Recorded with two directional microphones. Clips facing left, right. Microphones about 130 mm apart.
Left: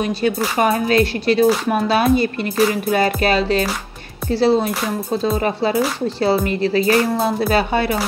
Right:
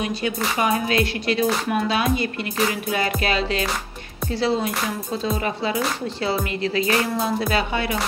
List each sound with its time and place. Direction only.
0.6 s speech: 45° left (ahead or behind)
2.9 s music: 45° left (ahead or behind)
4.3 s speech: 30° left (ahead or behind)